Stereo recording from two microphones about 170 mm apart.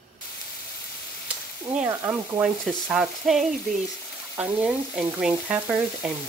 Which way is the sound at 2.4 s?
Centre (ahead or behind).